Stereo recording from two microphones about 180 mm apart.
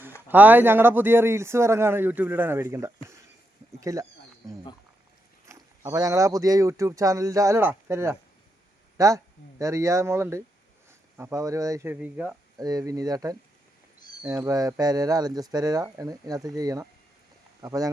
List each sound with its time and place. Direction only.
0.3 s speech: 10° right (ahead or behind)
5.5 s speech: 15° right (ahead or behind)
12.5 s speech: 20° right (ahead or behind)